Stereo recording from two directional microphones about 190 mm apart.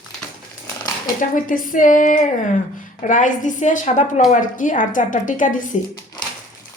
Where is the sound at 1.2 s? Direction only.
45° left (ahead or behind).